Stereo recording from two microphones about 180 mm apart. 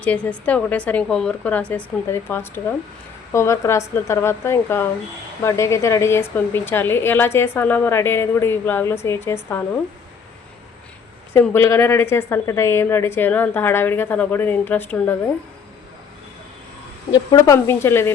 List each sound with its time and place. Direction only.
0.0 s a woman's voice: 5° left (ahead or behind)
11.3 s a woman's voice: 15° left (ahead or behind)
17.1 s a woman's voice: 20° left (ahead or behind)